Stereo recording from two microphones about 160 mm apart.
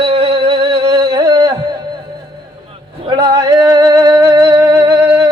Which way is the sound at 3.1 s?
25° right (ahead or behind).